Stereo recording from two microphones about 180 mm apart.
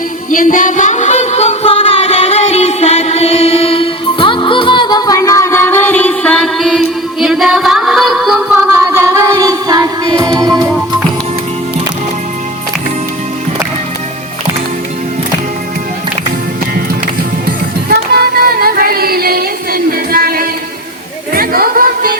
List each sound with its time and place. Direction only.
0.3 s a sound: 45° left (ahead or behind); by 8.8 s 5° right (ahead or behind)
8.8 s music: 15° right (ahead or behind)
17.8 s music: 60° right (ahead or behind)